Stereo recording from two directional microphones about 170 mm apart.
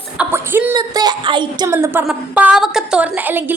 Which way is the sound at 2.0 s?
5° right (ahead or behind).